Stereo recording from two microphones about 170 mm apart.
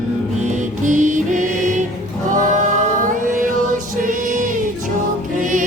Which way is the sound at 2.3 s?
50° right (ahead or behind).